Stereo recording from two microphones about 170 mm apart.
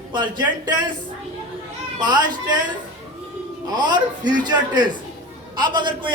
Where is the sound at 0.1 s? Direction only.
25° right (ahead or behind).